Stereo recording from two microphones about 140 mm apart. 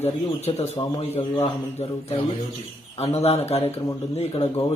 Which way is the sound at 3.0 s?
50° left (ahead or behind).